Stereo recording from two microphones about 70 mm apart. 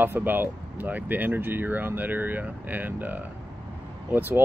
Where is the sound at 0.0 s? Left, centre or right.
Right.